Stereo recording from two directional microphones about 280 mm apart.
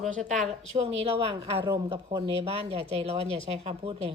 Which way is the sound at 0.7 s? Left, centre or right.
Right.